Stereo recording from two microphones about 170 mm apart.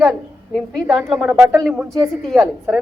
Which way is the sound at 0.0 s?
Centre (ahead or behind).